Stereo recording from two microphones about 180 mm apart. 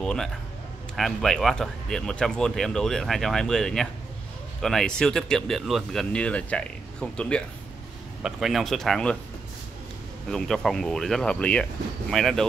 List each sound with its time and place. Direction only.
0.0 s speech: centre (ahead or behind)
10.3 s speech: centre (ahead or behind)